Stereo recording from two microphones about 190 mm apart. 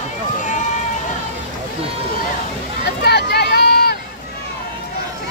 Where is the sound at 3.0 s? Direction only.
60° left (ahead or behind).